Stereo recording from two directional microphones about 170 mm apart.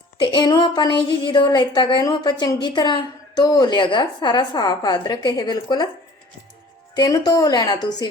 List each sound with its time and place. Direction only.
0.2 s a woman's voice: 25° left (ahead or behind)
6.9 s a woman's voice: 25° left (ahead or behind)